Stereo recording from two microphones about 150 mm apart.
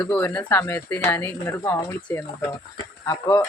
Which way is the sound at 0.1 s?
10° left (ahead or behind).